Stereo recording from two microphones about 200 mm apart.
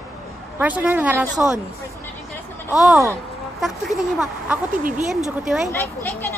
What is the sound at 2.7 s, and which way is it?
Speech, 5° right (ahead or behind).